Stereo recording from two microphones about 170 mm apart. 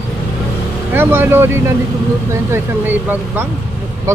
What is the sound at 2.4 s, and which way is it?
Speech, 10° right (ahead or behind).